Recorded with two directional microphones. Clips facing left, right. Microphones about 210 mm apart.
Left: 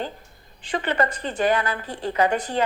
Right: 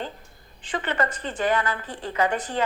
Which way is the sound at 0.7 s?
35° left (ahead or behind).